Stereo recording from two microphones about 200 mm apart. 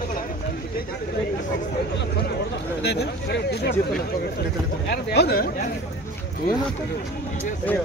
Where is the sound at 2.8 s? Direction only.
55° left (ahead or behind).